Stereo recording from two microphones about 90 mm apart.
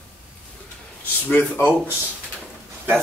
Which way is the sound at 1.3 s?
25° left (ahead or behind).